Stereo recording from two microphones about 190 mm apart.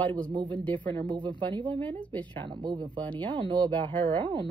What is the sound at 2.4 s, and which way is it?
Speech, 25° right (ahead or behind).